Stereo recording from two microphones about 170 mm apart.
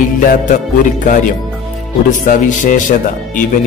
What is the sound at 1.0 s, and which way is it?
Speech, 50° left (ahead or behind).